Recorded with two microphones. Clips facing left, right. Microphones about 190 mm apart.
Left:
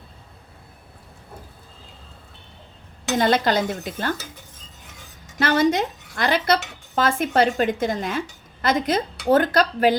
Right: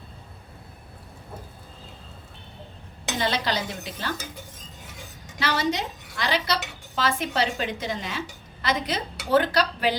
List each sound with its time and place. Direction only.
3.2 s a woman's voice: 50° left (ahead or behind)
5.4 s a woman's voice: 50° left (ahead or behind)